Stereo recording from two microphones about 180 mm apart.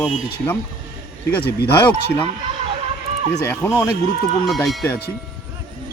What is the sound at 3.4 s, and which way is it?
Speech, 15° left (ahead or behind).